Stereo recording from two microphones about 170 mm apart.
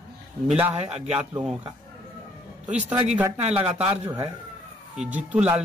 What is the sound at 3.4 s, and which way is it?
Speech, 35° right (ahead or behind).